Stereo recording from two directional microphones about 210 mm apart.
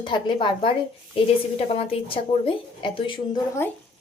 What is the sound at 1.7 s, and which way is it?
A woman's voice, 25° left (ahead or behind).